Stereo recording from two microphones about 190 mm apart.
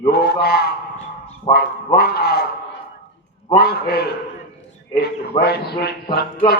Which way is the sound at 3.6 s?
60° left (ahead or behind).